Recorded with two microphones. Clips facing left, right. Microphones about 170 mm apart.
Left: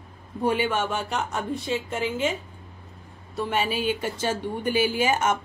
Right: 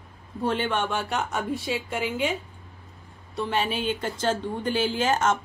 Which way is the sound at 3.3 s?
5° left (ahead or behind).